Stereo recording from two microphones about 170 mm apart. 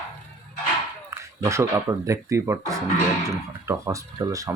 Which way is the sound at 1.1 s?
15° right (ahead or behind).